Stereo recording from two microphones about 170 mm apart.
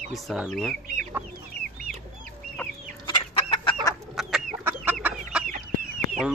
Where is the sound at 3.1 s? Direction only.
30° left (ahead or behind).